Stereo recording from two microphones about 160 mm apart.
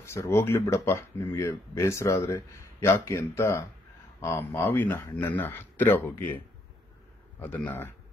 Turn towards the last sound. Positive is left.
turn(degrees=10)  # may be behind; listen again after turning